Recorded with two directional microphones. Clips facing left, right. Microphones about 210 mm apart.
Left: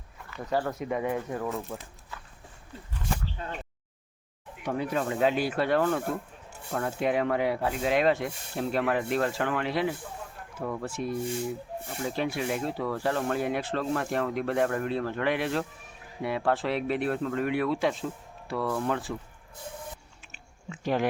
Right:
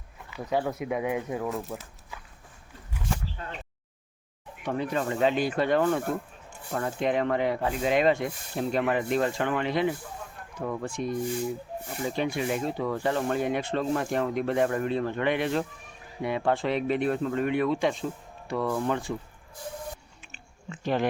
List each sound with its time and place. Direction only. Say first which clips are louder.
0.3 s speech: right 1 dB; 5° right (ahead or behind)
4.6 s speech: right 1 dB; 10° left (ahead or behind)
20.3 s a sound: right 1 dB; 10° left (ahead or behind)